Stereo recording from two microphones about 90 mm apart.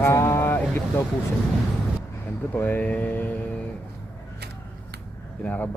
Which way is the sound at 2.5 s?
20° left (ahead or behind).